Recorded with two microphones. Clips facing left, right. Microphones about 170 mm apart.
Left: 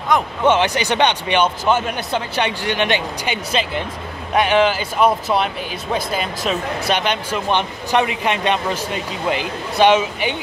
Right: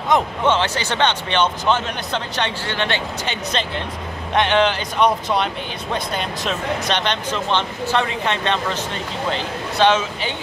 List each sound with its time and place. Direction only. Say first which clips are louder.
0.1 s a man's voice: right 1 dB; 20° right (ahead or behind)
0.5 s speech: left 5 dB; 15° left (ahead or behind)